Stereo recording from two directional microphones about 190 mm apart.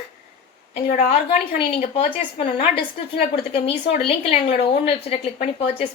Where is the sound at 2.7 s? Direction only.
55° left (ahead or behind).